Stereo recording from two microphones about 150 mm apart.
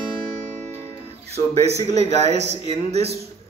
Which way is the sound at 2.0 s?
45° right (ahead or behind).